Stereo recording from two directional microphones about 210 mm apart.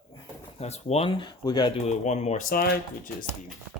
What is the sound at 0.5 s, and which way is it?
Speech, 30° left (ahead or behind).